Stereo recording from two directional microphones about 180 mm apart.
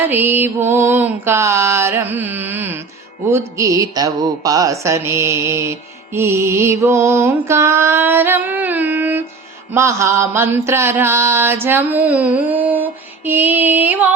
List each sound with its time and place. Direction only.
0.1 s mantra: 10° right (ahead or behind)